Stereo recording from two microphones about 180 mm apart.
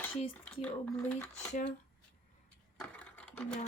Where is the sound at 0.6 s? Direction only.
5° left (ahead or behind).